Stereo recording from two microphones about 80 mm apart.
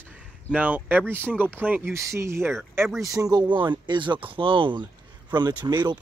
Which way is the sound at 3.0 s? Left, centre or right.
Right.